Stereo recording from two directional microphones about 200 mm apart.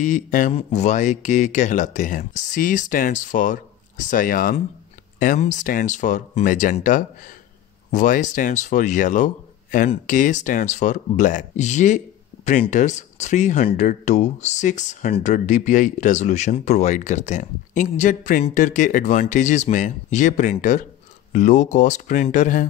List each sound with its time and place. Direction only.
0.0 s speech: 40° left (ahead or behind)